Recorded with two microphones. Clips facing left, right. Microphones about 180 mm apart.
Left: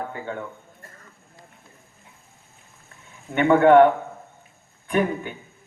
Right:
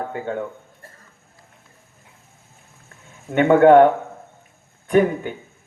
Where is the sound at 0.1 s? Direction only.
50° right (ahead or behind).